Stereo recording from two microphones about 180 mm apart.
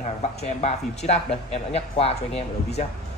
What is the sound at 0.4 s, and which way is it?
Speech, 35° left (ahead or behind).